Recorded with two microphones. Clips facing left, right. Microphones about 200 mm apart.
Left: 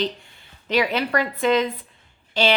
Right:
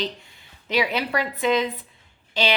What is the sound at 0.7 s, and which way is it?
A woman's voice, 10° right (ahead or behind).